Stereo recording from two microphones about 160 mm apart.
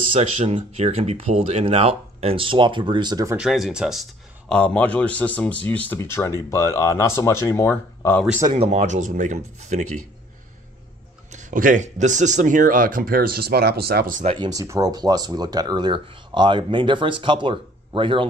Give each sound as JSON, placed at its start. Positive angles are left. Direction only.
{"t": 0.1, "sound": "speech", "side_deg": -40}
{"t": 3.3, "sound": "speech", "side_deg": 0}
{"t": 8.5, "sound": "speech", "side_deg": -45}
{"t": 11.3, "sound": "speech", "side_deg": -55}
{"t": 14.1, "sound": "speech", "side_deg": -40}
{"t": 14.4, "sound": "speech", "side_deg": -20}